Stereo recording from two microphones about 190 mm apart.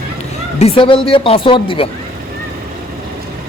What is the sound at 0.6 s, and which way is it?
A woman's voice, 30° left (ahead or behind).